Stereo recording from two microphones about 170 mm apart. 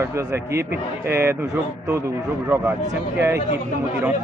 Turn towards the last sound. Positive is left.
turn(degrees=-15)  # may be behind; listen again after turning